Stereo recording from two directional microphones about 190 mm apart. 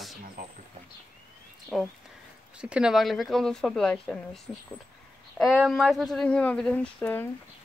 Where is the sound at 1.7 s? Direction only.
Centre (ahead or behind).